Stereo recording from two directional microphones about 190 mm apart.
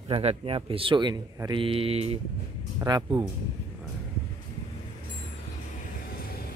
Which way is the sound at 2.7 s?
20° right (ahead or behind).